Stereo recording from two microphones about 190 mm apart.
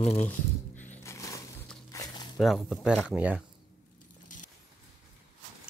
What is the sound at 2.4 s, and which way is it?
Speech, centre (ahead or behind).